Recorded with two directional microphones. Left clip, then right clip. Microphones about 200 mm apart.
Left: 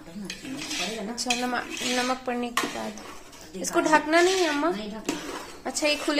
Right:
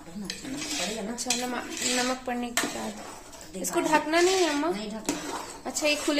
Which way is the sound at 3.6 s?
15° left (ahead or behind).